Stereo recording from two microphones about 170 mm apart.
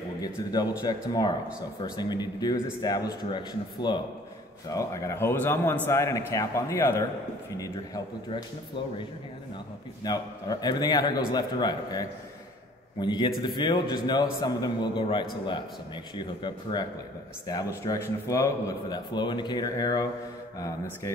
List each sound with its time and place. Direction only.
0.2 s a man's voice: 25° left (ahead or behind)
10.0 s a man's voice: 25° left (ahead or behind)
17.8 s a man's voice: 20° left (ahead or behind)